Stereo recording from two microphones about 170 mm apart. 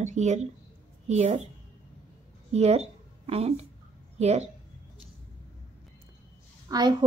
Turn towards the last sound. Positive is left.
turn(degrees=-25)  # may be behind; listen again after turning